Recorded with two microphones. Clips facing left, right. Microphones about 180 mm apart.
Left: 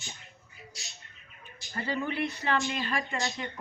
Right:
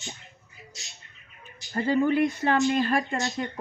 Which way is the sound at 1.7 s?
45° right (ahead or behind).